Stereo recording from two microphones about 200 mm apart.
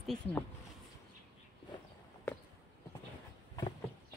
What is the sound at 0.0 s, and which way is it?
Speech, centre (ahead or behind).